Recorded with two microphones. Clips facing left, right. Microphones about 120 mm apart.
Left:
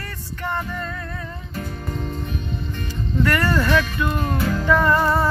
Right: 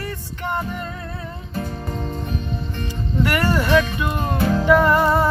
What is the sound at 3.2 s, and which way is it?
Music, 15° right (ahead or behind).